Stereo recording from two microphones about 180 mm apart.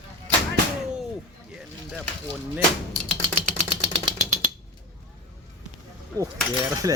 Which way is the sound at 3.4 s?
30° right (ahead or behind).